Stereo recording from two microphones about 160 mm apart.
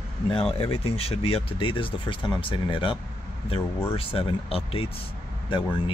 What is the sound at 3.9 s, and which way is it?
Speech, 35° left (ahead or behind).